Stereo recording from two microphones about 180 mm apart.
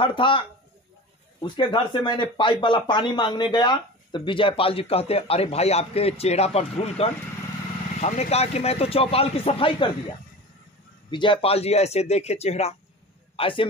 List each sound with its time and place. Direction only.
0.0 s speech: 30° left (ahead or behind)
1.4 s speech: 25° left (ahead or behind)
11.1 s speech: 25° left (ahead or behind)